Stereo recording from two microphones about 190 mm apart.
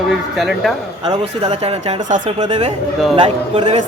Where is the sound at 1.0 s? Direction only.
30° right (ahead or behind).